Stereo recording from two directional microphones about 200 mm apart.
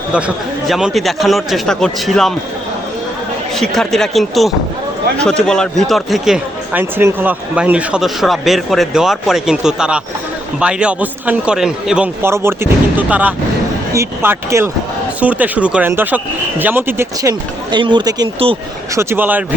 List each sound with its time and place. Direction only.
0.7 s a man's voice: centre (ahead or behind)
3.5 s a man's voice: centre (ahead or behind)
17.7 s speech: 25° right (ahead or behind)
18.9 s a man's voice: 10° right (ahead or behind)